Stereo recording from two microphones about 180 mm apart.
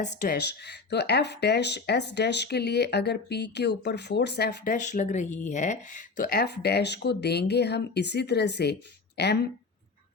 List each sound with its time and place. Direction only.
0.0 s speech: 40° left (ahead or behind)
0.3 s speech: 65° left (ahead or behind); by 6.2 s 45° left (ahead or behind)
6.2 s speech: 65° left (ahead or behind)